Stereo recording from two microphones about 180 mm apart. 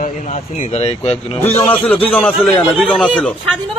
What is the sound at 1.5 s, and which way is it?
A man's voice, 10° left (ahead or behind).